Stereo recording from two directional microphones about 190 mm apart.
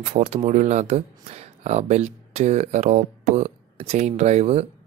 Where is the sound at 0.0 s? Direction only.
40° right (ahead or behind).